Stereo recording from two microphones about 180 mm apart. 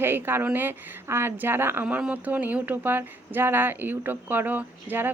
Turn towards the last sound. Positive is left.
turn(degrees=-10)  # may be behind; listen again after turning